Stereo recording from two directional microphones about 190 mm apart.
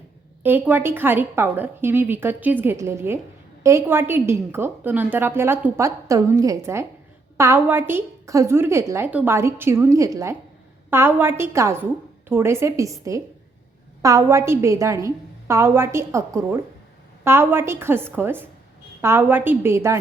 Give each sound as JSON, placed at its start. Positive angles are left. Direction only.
{"t": 0.4, "sound": "a woman's voice", "side_deg": -10}